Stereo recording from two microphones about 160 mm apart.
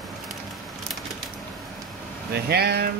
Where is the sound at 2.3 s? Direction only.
90° right.